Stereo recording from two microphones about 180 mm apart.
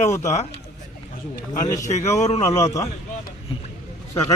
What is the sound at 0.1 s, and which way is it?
Speech, 15° left (ahead or behind).